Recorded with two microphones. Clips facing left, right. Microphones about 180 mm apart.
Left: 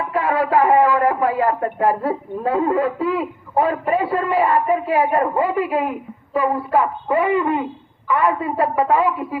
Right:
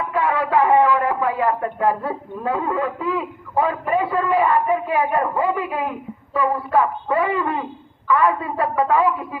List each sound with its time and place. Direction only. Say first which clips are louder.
0.1 s a man's voice: left 2 dB; 35° left (ahead or behind)
6.4 s a woman's voice: even; 25° left (ahead or behind)